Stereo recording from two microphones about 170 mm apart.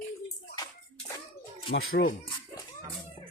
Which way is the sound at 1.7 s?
90° left.